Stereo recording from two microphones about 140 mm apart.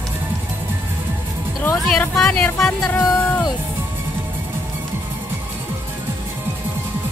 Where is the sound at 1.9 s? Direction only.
5° left (ahead or behind).